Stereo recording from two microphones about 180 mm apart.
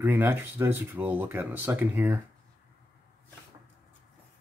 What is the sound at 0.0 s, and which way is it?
Speech, 10° right (ahead or behind).